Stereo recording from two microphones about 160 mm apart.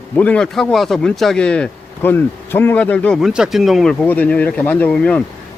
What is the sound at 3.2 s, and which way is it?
Speech, 5° right (ahead or behind).